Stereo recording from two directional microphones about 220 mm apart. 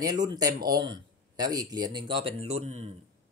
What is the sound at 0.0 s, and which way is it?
Speech, 15° right (ahead or behind).